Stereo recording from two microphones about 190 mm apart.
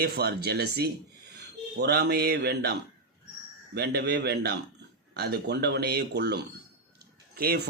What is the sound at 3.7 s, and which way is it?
A man's voice, 60° right (ahead or behind).